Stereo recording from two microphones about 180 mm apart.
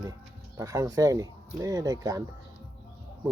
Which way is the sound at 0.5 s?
15° right (ahead or behind).